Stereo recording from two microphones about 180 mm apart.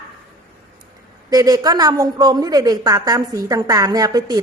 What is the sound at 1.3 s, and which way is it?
A woman's voice, 20° right (ahead or behind).